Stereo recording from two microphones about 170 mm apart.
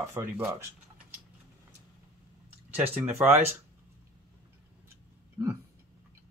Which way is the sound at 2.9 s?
10° right (ahead or behind).